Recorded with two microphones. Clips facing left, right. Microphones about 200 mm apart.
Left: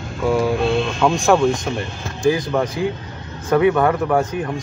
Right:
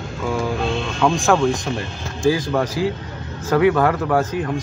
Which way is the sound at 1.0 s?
Centre (ahead or behind).